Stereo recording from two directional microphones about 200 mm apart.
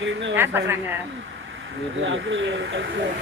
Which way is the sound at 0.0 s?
65° right (ahead or behind).